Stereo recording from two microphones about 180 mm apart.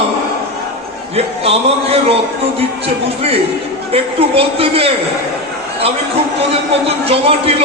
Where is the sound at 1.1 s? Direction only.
35° right (ahead or behind).